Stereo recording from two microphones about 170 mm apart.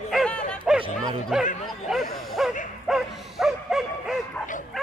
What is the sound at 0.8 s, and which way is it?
Bow-wow, 30° right (ahead or behind).